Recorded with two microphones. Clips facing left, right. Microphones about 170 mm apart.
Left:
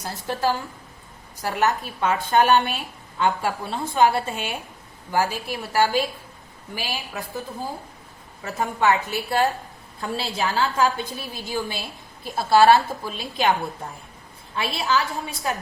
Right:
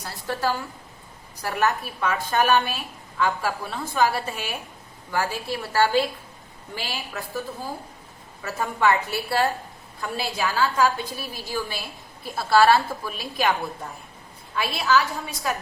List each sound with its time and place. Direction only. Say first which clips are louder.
0.0 s a woman's voice: left 2 dB; 20° left (ahead or behind)
8.4 s a woman's voice: left 1 dB; 20° left (ahead or behind)
14.5 s a woman's voice: right 2 dB; 25° left (ahead or behind)